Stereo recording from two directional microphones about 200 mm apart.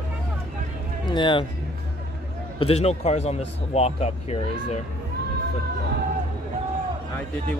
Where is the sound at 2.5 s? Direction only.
30° left (ahead or behind).